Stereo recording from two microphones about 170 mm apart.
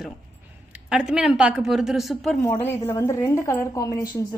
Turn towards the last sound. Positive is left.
turn(degrees=20)  # may be behind; listen again after turning